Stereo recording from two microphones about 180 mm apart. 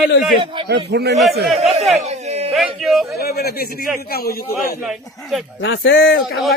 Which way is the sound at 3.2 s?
60° left (ahead or behind).